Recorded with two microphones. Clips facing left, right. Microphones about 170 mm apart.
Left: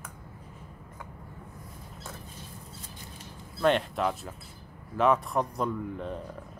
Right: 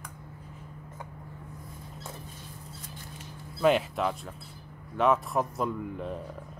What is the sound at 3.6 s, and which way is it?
Speech, centre (ahead or behind).